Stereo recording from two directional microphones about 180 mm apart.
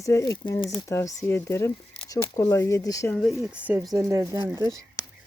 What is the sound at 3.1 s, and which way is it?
Speech, centre (ahead or behind).